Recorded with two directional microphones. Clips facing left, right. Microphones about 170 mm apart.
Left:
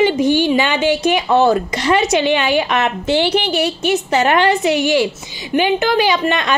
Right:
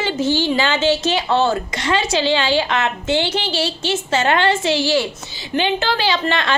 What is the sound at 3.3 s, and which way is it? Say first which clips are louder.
Speech: left 5 dB; 20° left (ahead or behind).